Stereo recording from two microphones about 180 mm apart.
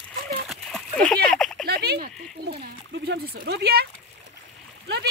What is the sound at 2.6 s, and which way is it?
Speech, 70° right (ahead or behind).